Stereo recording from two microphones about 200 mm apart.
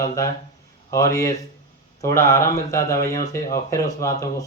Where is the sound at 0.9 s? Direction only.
15° left (ahead or behind).